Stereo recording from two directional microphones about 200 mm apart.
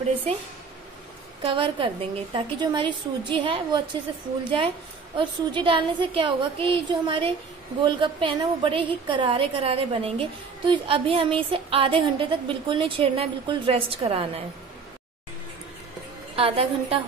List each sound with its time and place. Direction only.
1.4 s a woman's voice: 25° right (ahead or behind)
16.3 s a woman's voice: 25° right (ahead or behind)